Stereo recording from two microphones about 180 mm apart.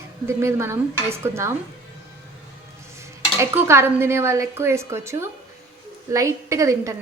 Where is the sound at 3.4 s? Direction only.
15° right (ahead or behind).